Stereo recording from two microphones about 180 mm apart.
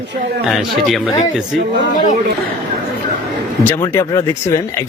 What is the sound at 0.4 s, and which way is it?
Speech, centre (ahead or behind).